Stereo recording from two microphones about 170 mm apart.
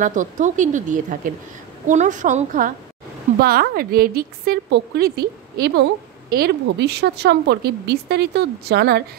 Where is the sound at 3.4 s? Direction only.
65° right (ahead or behind).